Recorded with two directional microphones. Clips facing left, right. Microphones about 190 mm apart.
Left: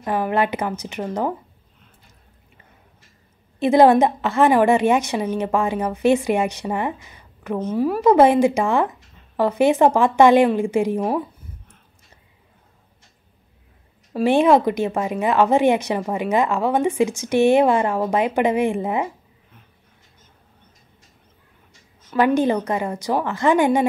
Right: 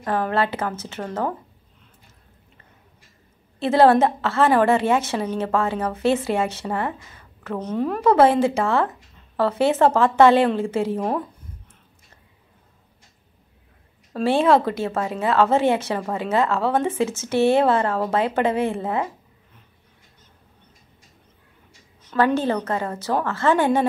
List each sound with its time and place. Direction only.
0.0 s a woman's voice: 15° left (ahead or behind)
3.5 s a woman's voice: 15° left (ahead or behind)
14.1 s a woman's voice: 15° left (ahead or behind)
22.1 s a woman's voice: 15° left (ahead or behind)